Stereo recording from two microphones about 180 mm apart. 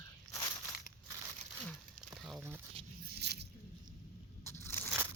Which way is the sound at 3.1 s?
70° right (ahead or behind).